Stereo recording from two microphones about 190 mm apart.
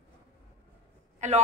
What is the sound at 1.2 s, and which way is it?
Speech, 40° right (ahead or behind).